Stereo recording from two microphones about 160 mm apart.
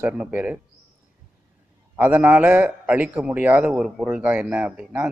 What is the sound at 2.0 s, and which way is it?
A man's voice, 10° right (ahead or behind).